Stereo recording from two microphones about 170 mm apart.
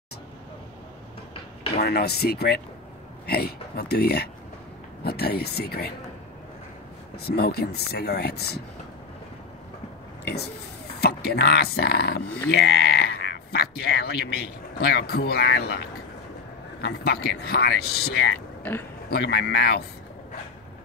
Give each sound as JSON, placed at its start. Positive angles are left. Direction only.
{"t": 1.8, "sound": "speech", "side_deg": 70}
{"t": 7.2, "sound": "speech", "side_deg": 70}
{"t": 10.2, "sound": "a sound", "side_deg": 70}
{"t": 11.0, "sound": "speech", "side_deg": 70}
{"t": 16.8, "sound": "speech", "side_deg": 70}
{"t": 18.6, "sound": "speech", "side_deg": 10}
{"t": 19.0, "sound": "speech", "side_deg": 75}